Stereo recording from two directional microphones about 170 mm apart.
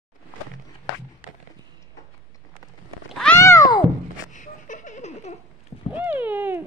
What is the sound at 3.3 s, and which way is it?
Cat, 15° left (ahead or behind).